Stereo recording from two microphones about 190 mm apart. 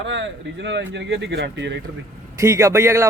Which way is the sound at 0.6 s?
70° right (ahead or behind).